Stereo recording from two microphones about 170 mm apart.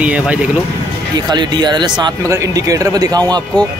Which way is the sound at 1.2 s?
25° right (ahead or behind).